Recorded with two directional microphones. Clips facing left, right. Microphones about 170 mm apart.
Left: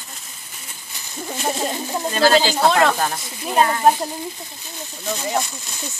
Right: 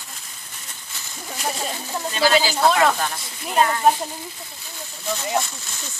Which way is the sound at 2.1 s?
40° left (ahead or behind).